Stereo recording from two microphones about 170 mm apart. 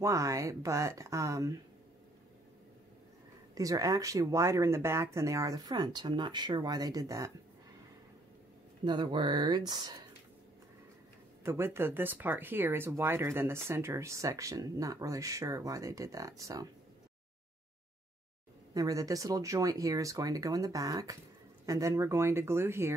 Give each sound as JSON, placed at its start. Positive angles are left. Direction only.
{"t": 0.0, "sound": "speech", "side_deg": -20}
{"t": 3.5, "sound": "speech", "side_deg": -20}
{"t": 8.8, "sound": "speech", "side_deg": -25}
{"t": 11.4, "sound": "speech", "side_deg": -15}
{"t": 18.7, "sound": "speech", "side_deg": -20}